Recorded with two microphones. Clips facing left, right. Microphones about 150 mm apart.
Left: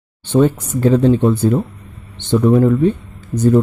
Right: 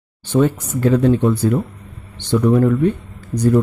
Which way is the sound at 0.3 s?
25° left (ahead or behind).